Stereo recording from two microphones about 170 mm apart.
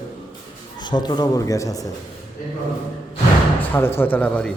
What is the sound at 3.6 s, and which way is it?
Speech, 10° left (ahead or behind).